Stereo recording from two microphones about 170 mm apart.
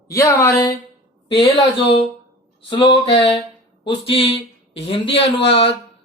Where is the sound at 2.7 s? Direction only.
25° left (ahead or behind).